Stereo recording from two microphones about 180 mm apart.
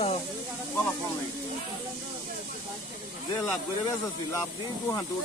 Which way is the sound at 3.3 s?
15° left (ahead or behind).